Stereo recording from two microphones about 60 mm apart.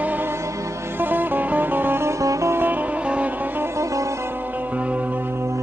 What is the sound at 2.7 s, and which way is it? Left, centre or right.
Music, right.